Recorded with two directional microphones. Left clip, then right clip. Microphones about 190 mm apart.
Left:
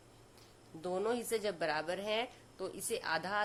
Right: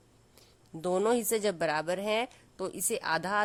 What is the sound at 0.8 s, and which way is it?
A woman's voice, 50° right (ahead or behind).